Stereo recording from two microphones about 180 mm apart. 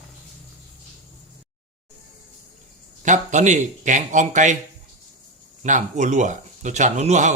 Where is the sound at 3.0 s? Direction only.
40° right (ahead or behind).